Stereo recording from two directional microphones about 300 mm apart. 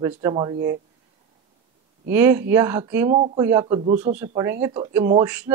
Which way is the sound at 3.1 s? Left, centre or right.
Right.